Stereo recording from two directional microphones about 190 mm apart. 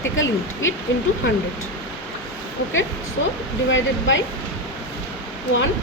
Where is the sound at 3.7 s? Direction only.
75° left (ahead or behind).